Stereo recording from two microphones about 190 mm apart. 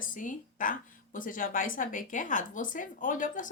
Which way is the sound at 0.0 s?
45° left (ahead or behind).